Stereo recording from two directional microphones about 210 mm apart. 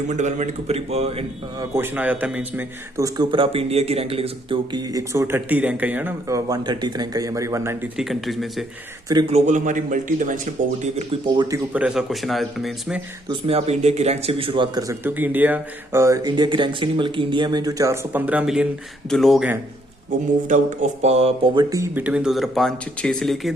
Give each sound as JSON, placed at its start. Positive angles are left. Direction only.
{"t": 0.1, "sound": "speech", "side_deg": -35}
{"t": 1.7, "sound": "speech", "side_deg": -10}
{"t": 3.2, "sound": "speech", "side_deg": -25}
{"t": 9.0, "sound": "speech", "side_deg": -25}
{"t": 10.9, "sound": "speech", "side_deg": -25}
{"t": 11.5, "sound": "speech", "side_deg": -5}
{"t": 13.5, "sound": "speech", "side_deg": -30}
{"t": 20.5, "sound": "speech", "side_deg": -35}